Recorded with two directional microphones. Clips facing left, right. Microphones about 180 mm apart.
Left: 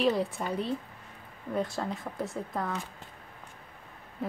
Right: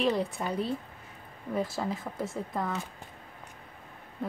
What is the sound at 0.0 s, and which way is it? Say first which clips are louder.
Speech: left 1 dB; centre (ahead or behind).